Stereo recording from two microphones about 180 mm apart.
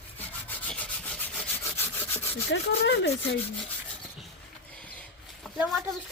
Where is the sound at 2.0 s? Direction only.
10° left (ahead or behind).